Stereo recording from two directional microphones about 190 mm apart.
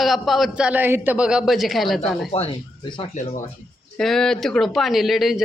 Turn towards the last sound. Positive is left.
turn(degrees=0)  # may be behind; listen again after turning